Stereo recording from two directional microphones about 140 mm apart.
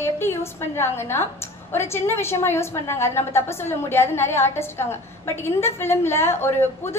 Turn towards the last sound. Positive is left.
turn(degrees=15)  # may be behind; listen again after turning